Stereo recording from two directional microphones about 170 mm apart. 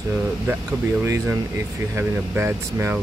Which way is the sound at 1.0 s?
15° right (ahead or behind).